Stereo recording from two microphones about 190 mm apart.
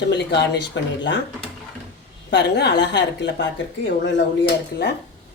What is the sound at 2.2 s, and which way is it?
Speech, 65° left (ahead or behind).